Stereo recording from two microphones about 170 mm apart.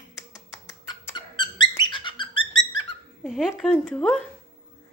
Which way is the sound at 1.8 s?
30° left (ahead or behind).